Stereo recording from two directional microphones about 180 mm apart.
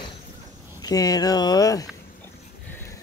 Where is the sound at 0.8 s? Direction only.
20° left (ahead or behind).